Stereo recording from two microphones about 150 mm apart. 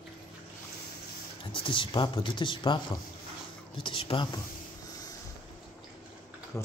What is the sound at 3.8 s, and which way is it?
Speech, 35° left (ahead or behind).